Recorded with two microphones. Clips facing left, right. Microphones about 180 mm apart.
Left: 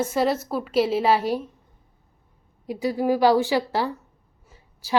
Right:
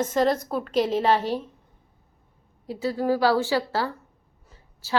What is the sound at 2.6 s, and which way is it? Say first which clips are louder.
A woman's voice: left 2 dB; 15° left (ahead or behind).